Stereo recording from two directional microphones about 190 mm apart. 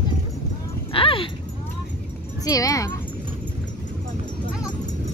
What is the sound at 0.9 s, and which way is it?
Dog, 30° left (ahead or behind).